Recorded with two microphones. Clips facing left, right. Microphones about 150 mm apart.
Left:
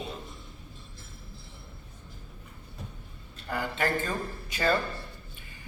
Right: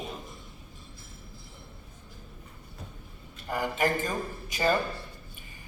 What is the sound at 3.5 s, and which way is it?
Speech, 15° right (ahead or behind).